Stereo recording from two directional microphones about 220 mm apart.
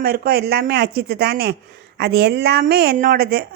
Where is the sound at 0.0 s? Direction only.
45° right (ahead or behind).